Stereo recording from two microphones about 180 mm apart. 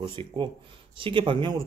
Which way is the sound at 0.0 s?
30° right (ahead or behind).